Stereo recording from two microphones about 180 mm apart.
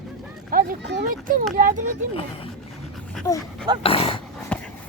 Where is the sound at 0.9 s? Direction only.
70° right (ahead or behind).